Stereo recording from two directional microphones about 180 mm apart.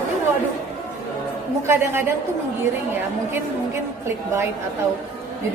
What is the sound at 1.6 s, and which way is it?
Speech, 15° right (ahead or behind).